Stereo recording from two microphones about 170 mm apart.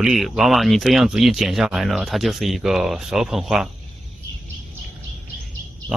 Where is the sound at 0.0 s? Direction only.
Centre (ahead or behind).